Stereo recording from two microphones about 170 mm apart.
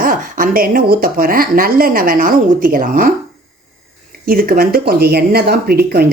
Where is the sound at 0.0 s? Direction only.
55° right (ahead or behind).